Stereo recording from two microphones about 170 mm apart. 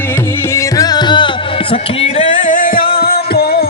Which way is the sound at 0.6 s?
20° left (ahead or behind).